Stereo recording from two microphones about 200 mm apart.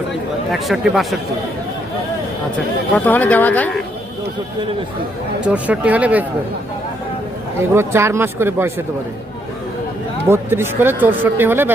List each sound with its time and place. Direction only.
0.5 s speech: centre (ahead or behind)
2.9 s speech: 10° left (ahead or behind)
5.5 s speech: 5° right (ahead or behind)
7.7 s speech: 10° right (ahead or behind)
10.2 s speech: 10° right (ahead or behind)